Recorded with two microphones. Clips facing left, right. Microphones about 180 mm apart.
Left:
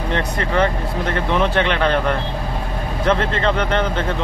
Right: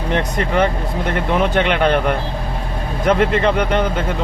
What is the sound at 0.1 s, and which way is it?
Speech, 15° right (ahead or behind).